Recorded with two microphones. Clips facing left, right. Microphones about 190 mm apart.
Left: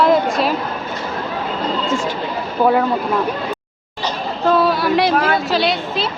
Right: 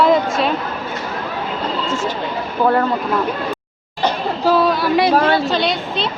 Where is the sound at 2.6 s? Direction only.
5° left (ahead or behind).